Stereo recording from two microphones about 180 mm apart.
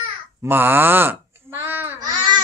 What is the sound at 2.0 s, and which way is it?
Babbling, 25° right (ahead or behind).